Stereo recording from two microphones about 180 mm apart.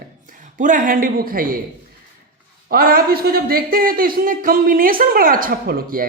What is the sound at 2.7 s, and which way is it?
Speech, 55° right (ahead or behind).